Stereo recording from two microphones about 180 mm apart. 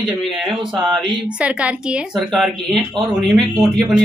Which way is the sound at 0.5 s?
25° right (ahead or behind).